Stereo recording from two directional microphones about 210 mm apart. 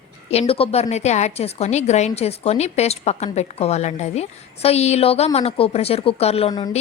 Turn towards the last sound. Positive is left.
turn(degrees=20)  # may be behind; listen again after turning